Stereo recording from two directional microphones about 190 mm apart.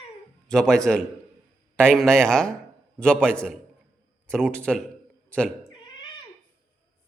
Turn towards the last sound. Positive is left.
turn(degrees=25)  # may be behind; listen again after turning